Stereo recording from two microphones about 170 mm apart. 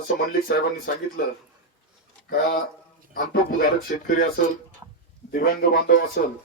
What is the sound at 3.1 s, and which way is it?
Speech, 60° left (ahead or behind).